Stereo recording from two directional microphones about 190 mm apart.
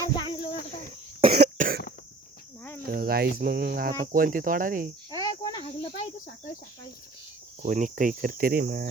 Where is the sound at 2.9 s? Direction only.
50° right (ahead or behind).